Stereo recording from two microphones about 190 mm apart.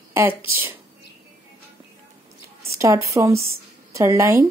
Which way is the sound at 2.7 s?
15° right (ahead or behind).